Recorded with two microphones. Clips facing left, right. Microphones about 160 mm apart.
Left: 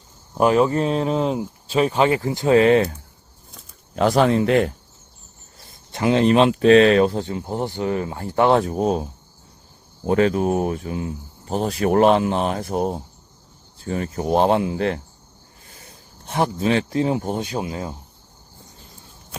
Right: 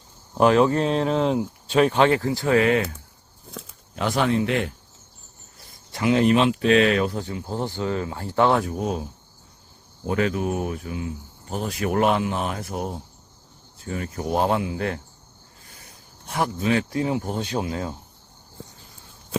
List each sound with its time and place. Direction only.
0.3 s speech: 5° left (ahead or behind); by 2.9 s 30° left (ahead or behind)
3.9 s speech: 40° left (ahead or behind)
5.9 s speech: 30° left (ahead or behind)
8.6 s speech: 30° left (ahead or behind)
10.1 s speech: 35° left (ahead or behind)
16.3 s speech: 25° left (ahead or behind)
17.4 s speech: 10° left (ahead or behind)